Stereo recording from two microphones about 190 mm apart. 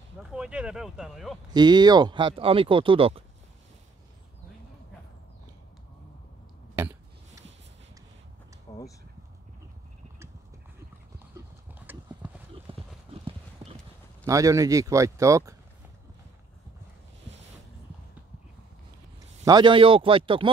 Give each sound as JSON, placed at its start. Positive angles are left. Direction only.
{"t": 0.3, "sound": "speech", "side_deg": -5}
{"t": 1.5, "sound": "speech", "side_deg": -20}
{"t": 8.7, "sound": "a sound", "side_deg": 20}
{"t": 11.8, "sound": "clip-clop", "side_deg": -10}
{"t": 12.7, "sound": "clip-clop", "side_deg": -30}
{"t": 14.2, "sound": "speech", "side_deg": -15}
{"t": 19.4, "sound": "speech", "side_deg": -25}